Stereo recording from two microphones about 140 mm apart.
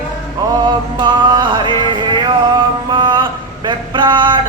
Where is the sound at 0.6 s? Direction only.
35° right (ahead or behind).